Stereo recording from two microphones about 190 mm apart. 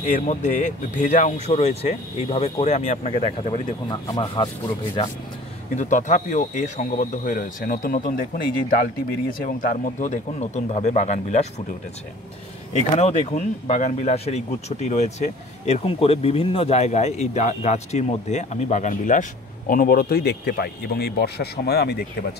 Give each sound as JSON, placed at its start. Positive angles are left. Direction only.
{"t": 0.0, "sound": "speech", "side_deg": 40}
{"t": 5.8, "sound": "speech", "side_deg": 40}
{"t": 12.9, "sound": "speech", "side_deg": 35}